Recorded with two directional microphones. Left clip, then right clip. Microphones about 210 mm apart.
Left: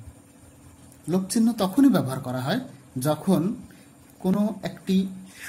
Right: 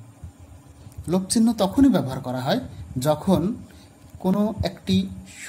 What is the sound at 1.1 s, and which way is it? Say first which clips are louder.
Speech: right 2 dB; 20° right (ahead or behind).